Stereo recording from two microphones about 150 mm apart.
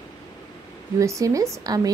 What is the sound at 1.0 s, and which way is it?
Speech, 20° right (ahead or behind).